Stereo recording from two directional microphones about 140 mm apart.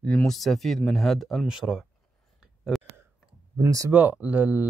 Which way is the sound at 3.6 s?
25° right (ahead or behind).